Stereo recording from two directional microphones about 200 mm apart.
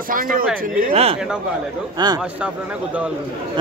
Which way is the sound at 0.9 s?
30° right (ahead or behind).